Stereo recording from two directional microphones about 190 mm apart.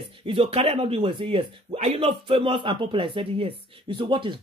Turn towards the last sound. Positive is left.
turn(degrees=-25)  # may be behind; listen again after turning